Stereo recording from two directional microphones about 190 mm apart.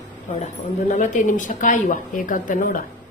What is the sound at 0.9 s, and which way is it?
A woman's voice, 40° left (ahead or behind).